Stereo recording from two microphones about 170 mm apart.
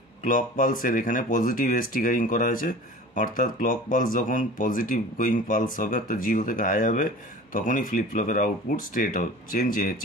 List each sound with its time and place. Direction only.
0.2 s speech: 50° left (ahead or behind)